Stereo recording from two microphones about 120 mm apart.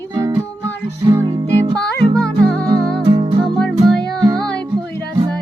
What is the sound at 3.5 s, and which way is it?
Music, 5° left (ahead or behind).